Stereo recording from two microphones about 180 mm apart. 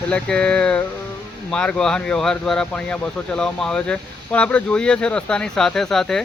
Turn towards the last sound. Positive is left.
turn(degrees=5)  # may be behind; listen again after turning